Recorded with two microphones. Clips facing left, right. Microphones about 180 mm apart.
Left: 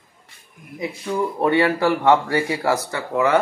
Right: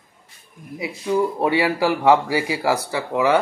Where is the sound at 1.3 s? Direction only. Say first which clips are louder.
Left 1 dB; 10° right (ahead or behind).